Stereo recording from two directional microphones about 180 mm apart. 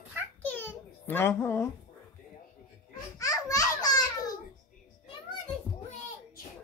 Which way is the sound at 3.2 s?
20° left (ahead or behind).